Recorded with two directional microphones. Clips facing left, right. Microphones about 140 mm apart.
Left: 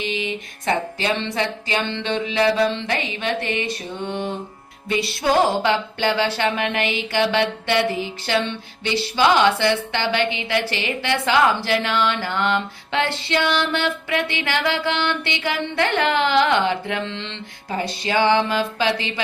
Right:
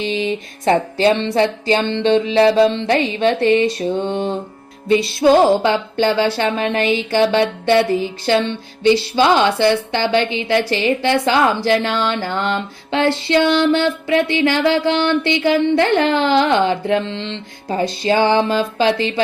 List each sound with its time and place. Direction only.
0.0 s speech: 35° right (ahead or behind)